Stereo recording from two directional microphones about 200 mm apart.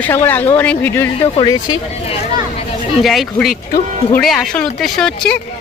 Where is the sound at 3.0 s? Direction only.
Centre (ahead or behind).